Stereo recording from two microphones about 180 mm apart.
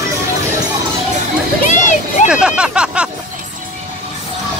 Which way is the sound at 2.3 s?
5° right (ahead or behind).